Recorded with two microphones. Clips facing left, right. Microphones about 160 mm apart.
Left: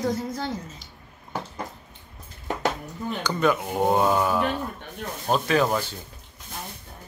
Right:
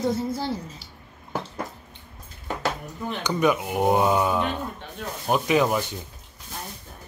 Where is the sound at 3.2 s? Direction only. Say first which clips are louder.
Right 1 dB; 15° right (ahead or behind).